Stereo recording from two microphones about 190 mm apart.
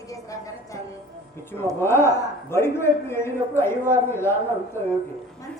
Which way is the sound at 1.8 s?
15° left (ahead or behind).